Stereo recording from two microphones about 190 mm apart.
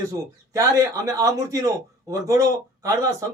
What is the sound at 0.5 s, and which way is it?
A man's voice, 20° right (ahead or behind).